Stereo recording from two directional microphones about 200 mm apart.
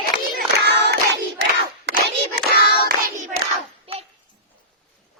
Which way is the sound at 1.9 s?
55° right (ahead or behind).